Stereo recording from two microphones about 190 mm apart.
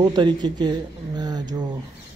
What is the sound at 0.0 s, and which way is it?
Speech, 25° right (ahead or behind).